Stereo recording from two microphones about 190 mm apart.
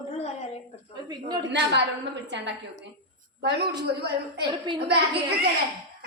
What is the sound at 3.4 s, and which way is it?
A woman's voice, 60° right (ahead or behind).